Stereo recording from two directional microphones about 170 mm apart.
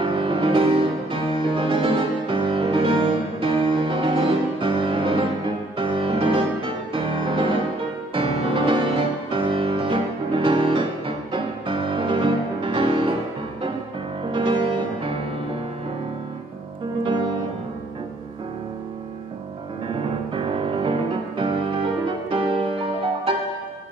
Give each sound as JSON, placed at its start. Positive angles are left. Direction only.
{"t": 0.0, "sound": "music", "side_deg": -30}
{"t": 14.3, "sound": "music", "side_deg": -30}
{"t": 19.9, "sound": "music", "side_deg": -30}